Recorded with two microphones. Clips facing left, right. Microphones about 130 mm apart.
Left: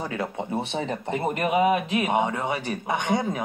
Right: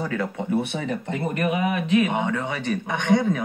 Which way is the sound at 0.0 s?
25° left (ahead or behind).